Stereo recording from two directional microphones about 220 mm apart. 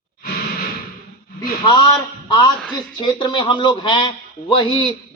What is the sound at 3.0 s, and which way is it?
A man's voice, 20° left (ahead or behind).